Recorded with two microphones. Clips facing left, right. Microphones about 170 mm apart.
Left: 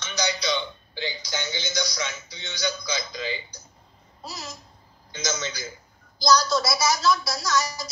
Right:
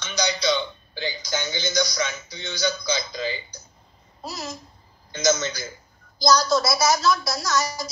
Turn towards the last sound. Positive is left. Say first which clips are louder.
# right 1 dB
turn(degrees=-50)  # may be behind; listen again after turning